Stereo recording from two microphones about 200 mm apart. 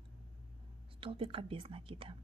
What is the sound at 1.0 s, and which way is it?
Speech, 25° right (ahead or behind).